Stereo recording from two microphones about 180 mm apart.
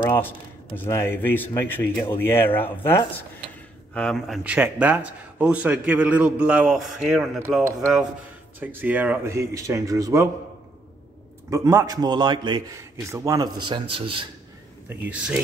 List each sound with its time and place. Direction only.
0.0 s speech: 10° left (ahead or behind)
4.4 s a man's voice: 5° right (ahead or behind)
8.5 s a man's voice: 10° right (ahead or behind)
11.5 s a man's voice: 20° right (ahead or behind)
14.9 s a man's voice: 5° right (ahead or behind)